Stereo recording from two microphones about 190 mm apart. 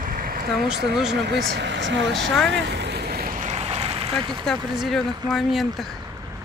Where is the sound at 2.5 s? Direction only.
65° right (ahead or behind); by 4.5 s 25° right (ahead or behind).